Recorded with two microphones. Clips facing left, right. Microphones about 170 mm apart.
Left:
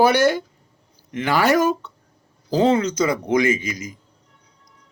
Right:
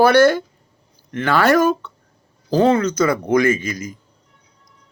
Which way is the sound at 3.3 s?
15° left (ahead or behind).